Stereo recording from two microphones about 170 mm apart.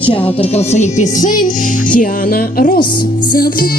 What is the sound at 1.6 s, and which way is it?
Speech, 50° left (ahead or behind).